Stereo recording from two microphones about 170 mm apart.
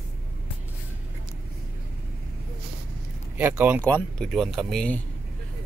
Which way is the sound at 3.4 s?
10° right (ahead or behind).